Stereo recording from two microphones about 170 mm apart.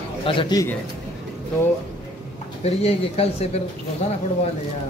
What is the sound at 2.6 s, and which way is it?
Speech, 35° left (ahead or behind).